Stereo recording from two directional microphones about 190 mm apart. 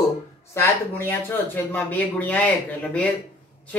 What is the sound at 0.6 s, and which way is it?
Speech, 10° left (ahead or behind).